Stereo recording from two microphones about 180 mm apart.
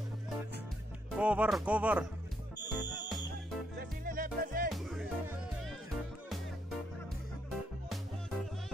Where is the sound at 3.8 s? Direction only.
50° right (ahead or behind).